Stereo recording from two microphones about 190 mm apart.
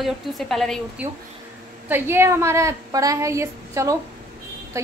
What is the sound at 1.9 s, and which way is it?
A woman's voice, 10° right (ahead or behind).